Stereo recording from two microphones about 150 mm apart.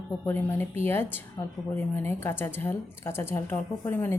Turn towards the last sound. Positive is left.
turn(degrees=15)  # may be behind; listen again after turning